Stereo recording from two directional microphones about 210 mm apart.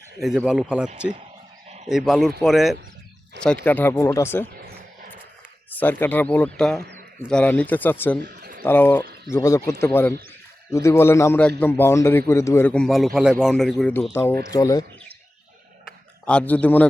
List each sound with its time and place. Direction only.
0.2 s speech: centre (ahead or behind)
1.9 s a man's voice: centre (ahead or behind)
4.5 s a sound: 45° right (ahead or behind)
5.7 s a man's voice: 10° left (ahead or behind)
8.2 s a sound: 40° right (ahead or behind)
8.6 s a man's voice: 10° left (ahead or behind)
16.2 s a man's voice: 5° left (ahead or behind)